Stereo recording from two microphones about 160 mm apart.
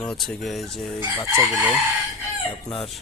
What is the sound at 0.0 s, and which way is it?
Speech, 5° left (ahead or behind).